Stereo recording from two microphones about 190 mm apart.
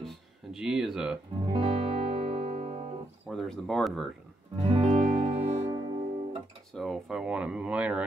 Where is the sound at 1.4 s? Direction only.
30° right (ahead or behind).